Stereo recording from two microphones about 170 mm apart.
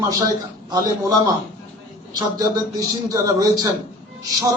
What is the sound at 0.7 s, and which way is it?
A man's voice, 25° right (ahead or behind).